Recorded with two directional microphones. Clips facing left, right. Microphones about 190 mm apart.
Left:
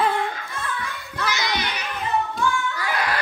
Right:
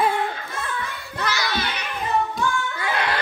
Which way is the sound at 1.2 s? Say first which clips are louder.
Even; 20° left (ahead or behind).